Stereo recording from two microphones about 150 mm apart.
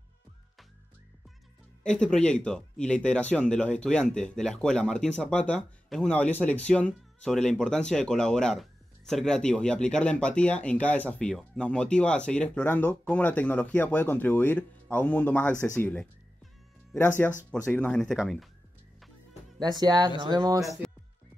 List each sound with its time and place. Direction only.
1.8 s speech: 5° left (ahead or behind)
19.6 s speech: 25° right (ahead or behind)